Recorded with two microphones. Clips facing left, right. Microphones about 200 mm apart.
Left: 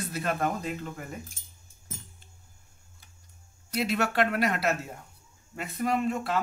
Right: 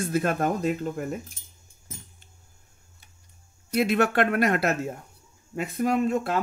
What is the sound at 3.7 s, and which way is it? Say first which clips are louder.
Speech: right 5 dB; 55° right (ahead or behind).